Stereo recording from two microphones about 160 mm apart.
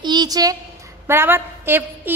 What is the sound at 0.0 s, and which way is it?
A child's voice, 25° right (ahead or behind).